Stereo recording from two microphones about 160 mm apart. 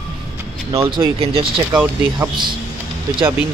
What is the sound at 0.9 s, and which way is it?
Speech, 35° right (ahead or behind).